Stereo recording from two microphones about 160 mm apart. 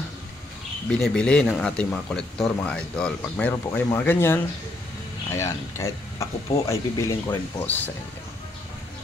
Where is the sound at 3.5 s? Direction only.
20° left (ahead or behind).